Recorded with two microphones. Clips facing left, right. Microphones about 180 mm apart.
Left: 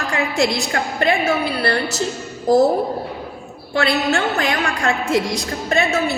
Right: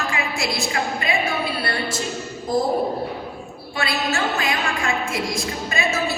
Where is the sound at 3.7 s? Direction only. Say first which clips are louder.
Left 6 dB; 70° left (ahead or behind).